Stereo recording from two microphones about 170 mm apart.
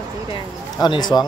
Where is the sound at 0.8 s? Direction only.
25° left (ahead or behind).